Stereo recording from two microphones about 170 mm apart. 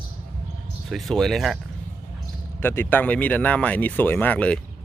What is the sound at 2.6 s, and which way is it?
Speech, 15° left (ahead or behind).